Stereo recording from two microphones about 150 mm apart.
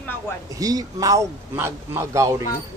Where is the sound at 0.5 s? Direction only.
25° right (ahead or behind).